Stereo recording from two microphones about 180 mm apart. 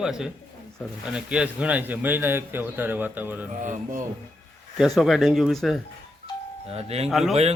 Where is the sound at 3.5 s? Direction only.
45° right (ahead or behind).